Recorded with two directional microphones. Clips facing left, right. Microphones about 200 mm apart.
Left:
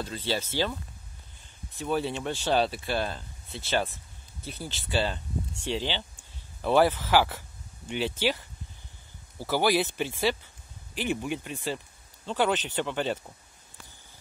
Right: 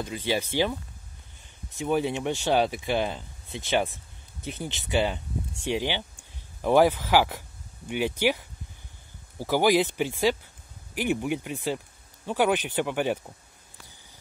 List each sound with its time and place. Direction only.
0.0 s speech: 15° right (ahead or behind)
1.8 s speech: 15° right (ahead or behind)